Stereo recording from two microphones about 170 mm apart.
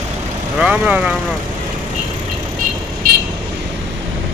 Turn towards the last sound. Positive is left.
turn(degrees=-60)  # may be behind; listen again after turning